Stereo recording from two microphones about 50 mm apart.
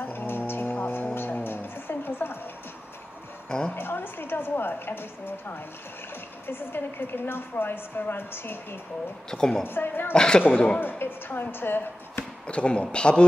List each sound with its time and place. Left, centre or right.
0.0 s music: left
3.4 s a woman's voice: centre
3.7 s a woman's voice: left
9.3 s a woman's voice: centre
9.7 s a woman's voice: left
10.1 s a woman's voice: centre
10.8 s a woman's voice: left
12.4 s speech: left